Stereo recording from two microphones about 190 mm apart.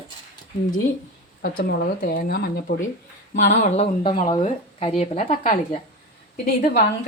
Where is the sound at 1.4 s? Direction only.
50° left (ahead or behind).